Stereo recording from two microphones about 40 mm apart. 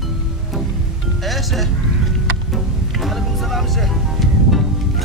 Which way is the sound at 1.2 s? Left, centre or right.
Centre.